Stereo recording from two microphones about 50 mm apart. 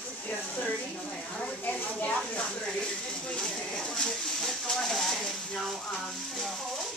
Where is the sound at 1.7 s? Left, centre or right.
Left.